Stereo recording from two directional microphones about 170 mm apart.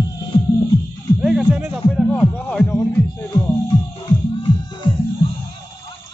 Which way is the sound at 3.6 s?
30° left (ahead or behind).